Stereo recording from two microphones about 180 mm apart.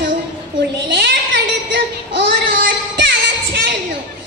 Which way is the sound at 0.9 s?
75° right (ahead or behind).